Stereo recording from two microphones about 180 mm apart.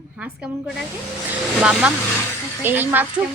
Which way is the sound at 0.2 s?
5° right (ahead or behind).